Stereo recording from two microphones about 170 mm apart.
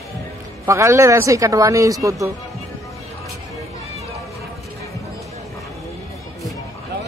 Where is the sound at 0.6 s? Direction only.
15° right (ahead or behind).